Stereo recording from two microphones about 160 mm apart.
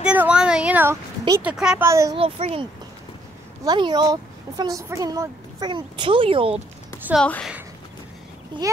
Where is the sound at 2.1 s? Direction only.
40° right (ahead or behind).